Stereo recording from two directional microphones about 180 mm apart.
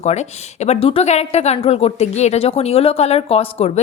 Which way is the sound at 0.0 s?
40° left (ahead or behind).